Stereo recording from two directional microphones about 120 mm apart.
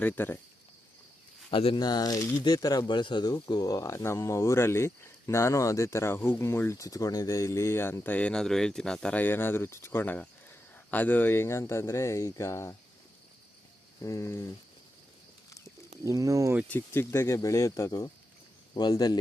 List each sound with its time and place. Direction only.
0.0 s speech: 15° left (ahead or behind)
1.5 s speech: 45° left (ahead or behind); by 12.7 s 25° left (ahead or behind)
14.0 s speech: 25° left (ahead or behind)
16.0 s speech: 25° right (ahead or behind)
16.6 s speech: 20° left (ahead or behind); by 19.2 s 35° left (ahead or behind)